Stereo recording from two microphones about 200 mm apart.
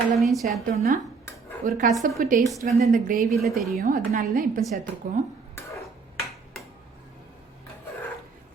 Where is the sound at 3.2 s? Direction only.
Centre (ahead or behind).